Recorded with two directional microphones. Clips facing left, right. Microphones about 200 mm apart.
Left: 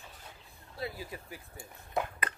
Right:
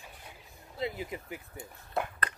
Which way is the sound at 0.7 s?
20° right (ahead or behind).